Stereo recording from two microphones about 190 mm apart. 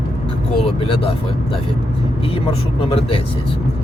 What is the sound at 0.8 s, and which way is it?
Speech, 30° left (ahead or behind).